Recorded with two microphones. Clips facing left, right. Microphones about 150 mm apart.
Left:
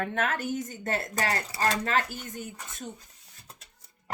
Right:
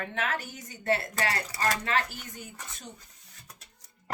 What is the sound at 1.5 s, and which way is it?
Speech, 25° left (ahead or behind).